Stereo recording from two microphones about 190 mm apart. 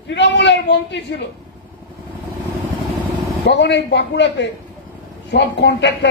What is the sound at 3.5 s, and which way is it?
A man's voice, 70° left (ahead or behind).